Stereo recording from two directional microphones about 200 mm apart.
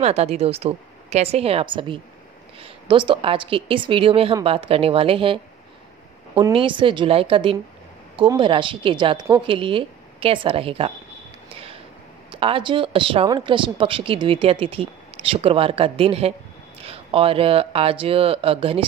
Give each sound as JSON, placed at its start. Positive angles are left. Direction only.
{"t": 0.0, "sound": "speech", "side_deg": -30}
{"t": 11.4, "sound": "a sound", "side_deg": -30}
{"t": 12.3, "sound": "speech", "side_deg": -25}